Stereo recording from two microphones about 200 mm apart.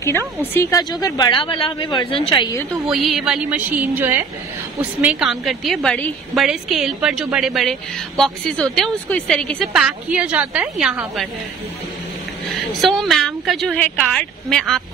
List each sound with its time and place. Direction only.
0.4 s a woman's voice: 15° left (ahead or behind)
2.9 s a woman's voice: centre (ahead or behind)
12.8 s a woman's voice: centre (ahead or behind)